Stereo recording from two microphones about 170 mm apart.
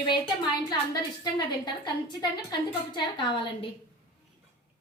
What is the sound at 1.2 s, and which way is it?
A woman's voice, 25° left (ahead or behind).